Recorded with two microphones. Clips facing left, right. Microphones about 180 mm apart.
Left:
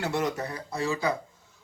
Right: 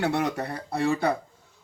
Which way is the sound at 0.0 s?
60° right (ahead or behind).